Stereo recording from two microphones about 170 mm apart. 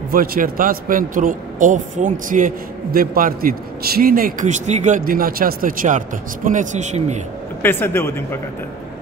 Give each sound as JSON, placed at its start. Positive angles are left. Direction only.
{"t": 0.1, "sound": "a man's voice", "side_deg": -55}
{"t": 7.6, "sound": "speech", "side_deg": 10}